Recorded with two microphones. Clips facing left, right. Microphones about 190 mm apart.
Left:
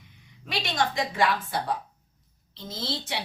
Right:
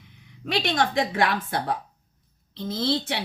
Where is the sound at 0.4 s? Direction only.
55° right (ahead or behind).